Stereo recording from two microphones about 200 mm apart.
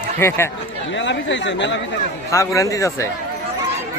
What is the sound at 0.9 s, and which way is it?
Speech, 65° left (ahead or behind).